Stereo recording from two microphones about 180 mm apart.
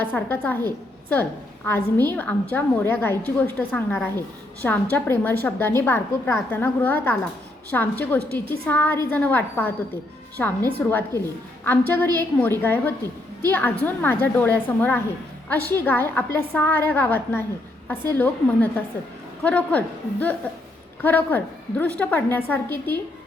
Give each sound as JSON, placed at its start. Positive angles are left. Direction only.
{"t": 0.0, "sound": "a woman's voice", "side_deg": 10}